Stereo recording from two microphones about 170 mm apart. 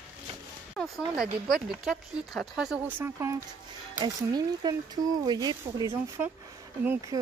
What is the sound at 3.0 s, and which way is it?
Speech, 15° right (ahead or behind).